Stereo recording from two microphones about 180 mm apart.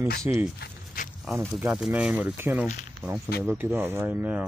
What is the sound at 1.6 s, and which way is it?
Speech, 10° right (ahead or behind).